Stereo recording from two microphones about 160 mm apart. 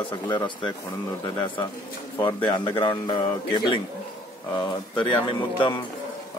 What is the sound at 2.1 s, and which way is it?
Speech, 30° left (ahead or behind).